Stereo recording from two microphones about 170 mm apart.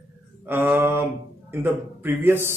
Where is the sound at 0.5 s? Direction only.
15° right (ahead or behind).